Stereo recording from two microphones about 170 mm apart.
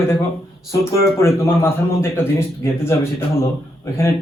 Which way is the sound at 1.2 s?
15° left (ahead or behind).